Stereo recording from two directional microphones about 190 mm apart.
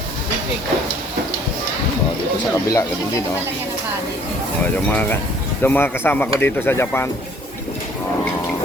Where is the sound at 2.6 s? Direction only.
15° left (ahead or behind).